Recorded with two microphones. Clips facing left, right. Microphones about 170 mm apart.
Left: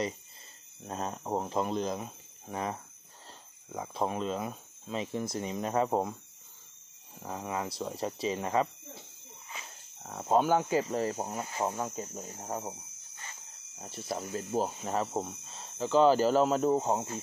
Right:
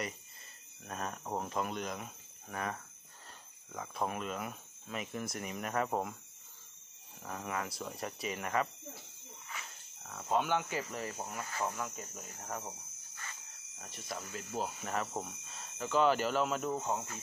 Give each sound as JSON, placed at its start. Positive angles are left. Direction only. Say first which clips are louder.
{"t": 0.8, "sound": "speech", "louder": "left 5 dB", "side_deg": 25}
{"t": 7.2, "sound": "speech", "louder": "left 4 dB", "side_deg": 20}
{"t": 10.0, "sound": "speech", "louder": "left 7 dB", "side_deg": 35}
{"t": 11.3, "sound": "speech", "louder": "left 5 dB", "side_deg": 25}